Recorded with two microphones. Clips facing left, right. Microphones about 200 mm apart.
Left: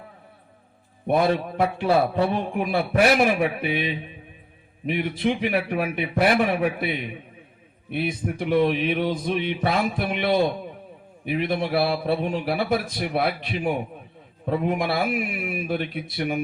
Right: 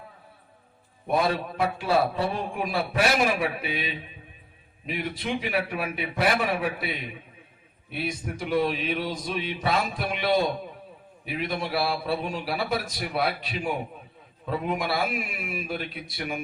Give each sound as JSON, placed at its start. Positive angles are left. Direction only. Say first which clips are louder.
{"t": 1.6, "sound": "a man's voice", "louder": "left 3 dB", "side_deg": 55}
{"t": 7.9, "sound": "a man's voice", "louder": "left 5 dB", "side_deg": 55}